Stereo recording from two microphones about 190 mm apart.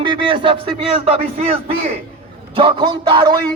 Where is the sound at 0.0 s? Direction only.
25° right (ahead or behind).